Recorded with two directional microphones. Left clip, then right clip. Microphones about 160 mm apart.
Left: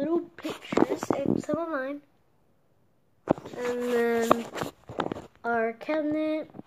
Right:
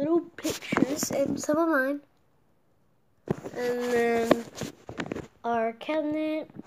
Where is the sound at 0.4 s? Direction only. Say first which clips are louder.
Right 4 dB; 40° right (ahead or behind).